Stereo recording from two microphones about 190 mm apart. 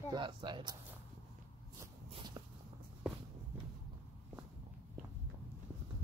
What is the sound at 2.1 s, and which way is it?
Walk, 20° right (ahead or behind).